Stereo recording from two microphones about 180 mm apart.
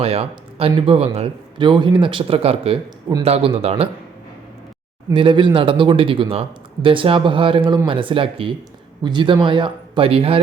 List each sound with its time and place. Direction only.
0.0 s speech: 35° right (ahead or behind)
5.0 s speech: 25° right (ahead or behind)